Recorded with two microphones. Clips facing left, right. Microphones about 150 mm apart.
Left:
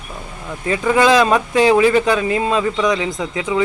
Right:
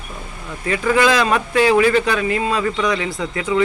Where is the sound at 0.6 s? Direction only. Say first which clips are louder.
Left 2 dB; 20° left (ahead or behind).